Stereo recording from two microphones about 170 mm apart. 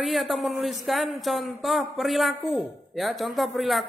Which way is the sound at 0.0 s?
Centre (ahead or behind).